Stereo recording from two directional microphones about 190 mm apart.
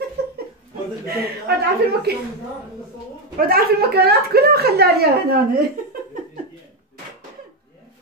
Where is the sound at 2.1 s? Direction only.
55° right (ahead or behind).